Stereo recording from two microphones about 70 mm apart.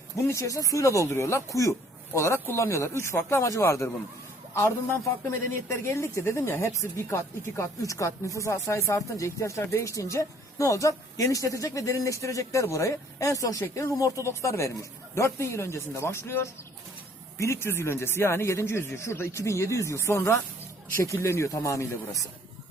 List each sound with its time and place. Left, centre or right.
0.3 s a woman's voice: left
7.8 s a woman's voice: left